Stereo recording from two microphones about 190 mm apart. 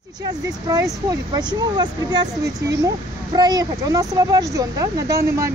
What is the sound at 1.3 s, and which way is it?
Speech, 20° right (ahead or behind).